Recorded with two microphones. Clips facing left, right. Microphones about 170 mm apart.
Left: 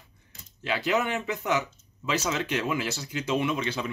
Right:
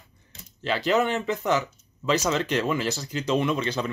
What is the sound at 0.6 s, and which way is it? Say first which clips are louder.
Speech: right 4 dB; 5° left (ahead or behind).